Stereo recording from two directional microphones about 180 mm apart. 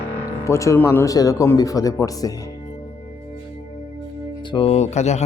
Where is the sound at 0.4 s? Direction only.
15° left (ahead or behind).